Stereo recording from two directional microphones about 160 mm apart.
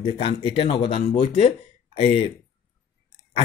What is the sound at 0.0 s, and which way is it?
Speech, 35° left (ahead or behind).